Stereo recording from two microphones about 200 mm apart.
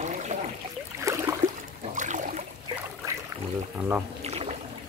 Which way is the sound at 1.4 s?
35° right (ahead or behind).